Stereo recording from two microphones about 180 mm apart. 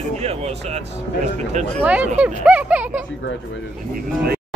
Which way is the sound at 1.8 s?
10° right (ahead or behind).